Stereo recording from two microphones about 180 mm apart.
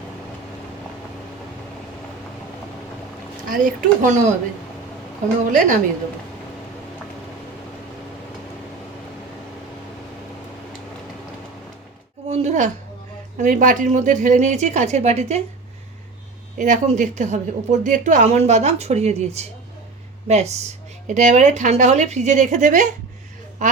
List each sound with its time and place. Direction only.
3.5 s speech: 50° right (ahead or behind)
5.5 s speech: 45° right (ahead or behind)
12.3 s a sound: 40° right (ahead or behind)
13.4 s a woman's voice: 45° right (ahead or behind)
16.6 s a woman's voice: 45° right (ahead or behind)